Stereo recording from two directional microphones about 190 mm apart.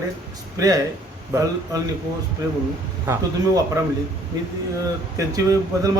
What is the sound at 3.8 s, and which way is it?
Speech, 15° right (ahead or behind).